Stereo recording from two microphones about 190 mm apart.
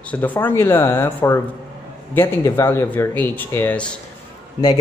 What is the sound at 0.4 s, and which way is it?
A man's voice, 10° left (ahead or behind).